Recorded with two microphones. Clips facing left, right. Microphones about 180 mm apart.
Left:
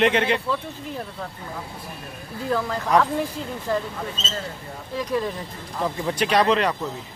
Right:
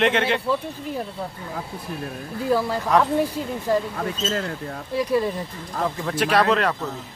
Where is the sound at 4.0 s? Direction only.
60° right (ahead or behind).